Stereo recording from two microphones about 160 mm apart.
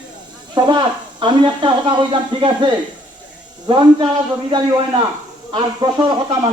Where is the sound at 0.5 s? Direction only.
25° right (ahead or behind).